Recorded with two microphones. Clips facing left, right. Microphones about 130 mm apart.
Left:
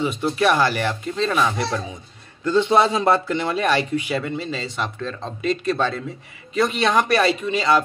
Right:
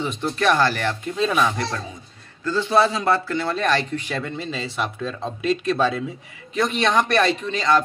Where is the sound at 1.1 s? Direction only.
5° right (ahead or behind).